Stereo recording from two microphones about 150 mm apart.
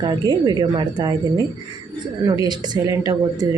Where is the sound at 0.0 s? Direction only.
30° right (ahead or behind).